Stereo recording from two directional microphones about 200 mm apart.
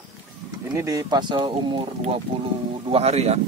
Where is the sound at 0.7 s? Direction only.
15° right (ahead or behind).